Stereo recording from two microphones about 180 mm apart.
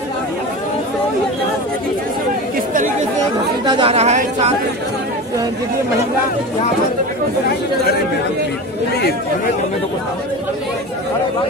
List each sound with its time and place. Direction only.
3.6 s speech: 30° right (ahead or behind)